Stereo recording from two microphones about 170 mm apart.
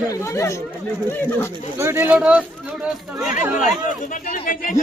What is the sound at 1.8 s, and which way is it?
Speech, 15° right (ahead or behind).